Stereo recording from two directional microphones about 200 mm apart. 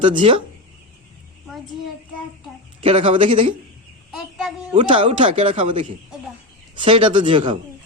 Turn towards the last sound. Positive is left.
turn(degrees=-25)  # may be behind; listen again after turning